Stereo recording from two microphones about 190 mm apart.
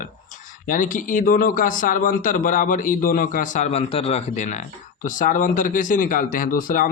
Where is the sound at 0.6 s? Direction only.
45° left (ahead or behind).